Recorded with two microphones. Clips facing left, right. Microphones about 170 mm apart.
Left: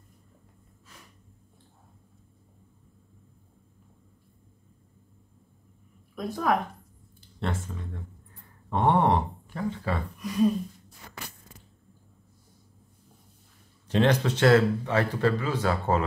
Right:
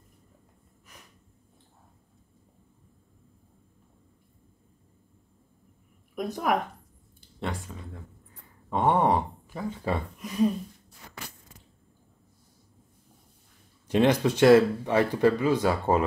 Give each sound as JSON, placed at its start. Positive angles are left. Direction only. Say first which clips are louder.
{"t": 6.1, "sound": "speech", "louder": "even", "side_deg": -20}
{"t": 7.3, "sound": "speech", "louder": "left 2 dB", "side_deg": -10}
{"t": 13.8, "sound": "speech", "louder": "right 1 dB", "side_deg": -10}